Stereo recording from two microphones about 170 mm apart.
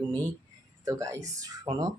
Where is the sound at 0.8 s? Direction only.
20° right (ahead or behind).